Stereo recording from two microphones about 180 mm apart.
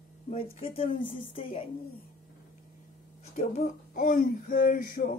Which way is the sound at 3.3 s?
45° left (ahead or behind).